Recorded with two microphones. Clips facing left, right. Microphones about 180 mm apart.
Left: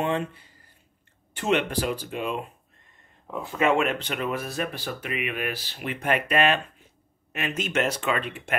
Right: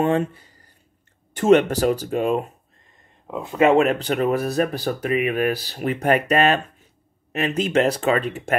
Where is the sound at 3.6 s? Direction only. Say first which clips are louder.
Right 7 dB; 35° right (ahead or behind).